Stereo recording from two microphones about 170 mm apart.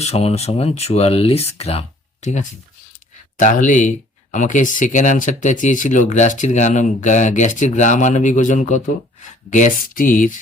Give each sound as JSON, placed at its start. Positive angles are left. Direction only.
{"t": 0.0, "sound": "speech", "side_deg": 35}